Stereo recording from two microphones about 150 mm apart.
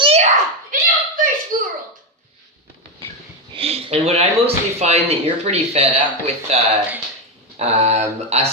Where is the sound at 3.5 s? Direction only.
40° right (ahead or behind).